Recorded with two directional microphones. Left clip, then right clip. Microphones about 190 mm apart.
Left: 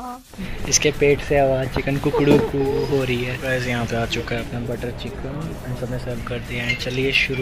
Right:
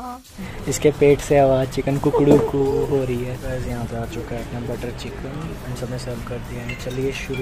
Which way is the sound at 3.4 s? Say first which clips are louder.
Left 6 dB; 10° left (ahead or behind).